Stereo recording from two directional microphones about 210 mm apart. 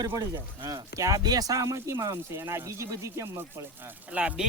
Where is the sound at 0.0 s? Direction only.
20° right (ahead or behind).